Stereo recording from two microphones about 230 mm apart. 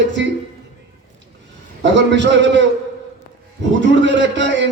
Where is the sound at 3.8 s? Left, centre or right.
Right.